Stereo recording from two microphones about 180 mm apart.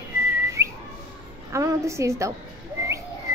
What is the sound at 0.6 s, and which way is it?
Whistling, 15° right (ahead or behind).